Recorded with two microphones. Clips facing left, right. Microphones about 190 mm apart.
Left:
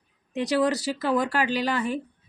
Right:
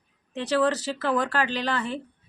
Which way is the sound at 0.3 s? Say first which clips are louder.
Even; 15° left (ahead or behind).